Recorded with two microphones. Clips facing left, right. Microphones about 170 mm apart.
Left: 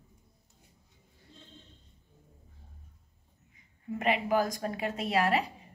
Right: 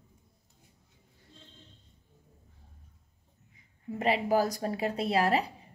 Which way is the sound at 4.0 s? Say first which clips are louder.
Right 2 dB; 35° right (ahead or behind).